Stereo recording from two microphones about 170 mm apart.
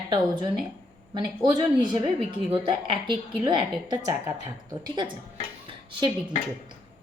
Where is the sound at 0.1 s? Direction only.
30° right (ahead or behind).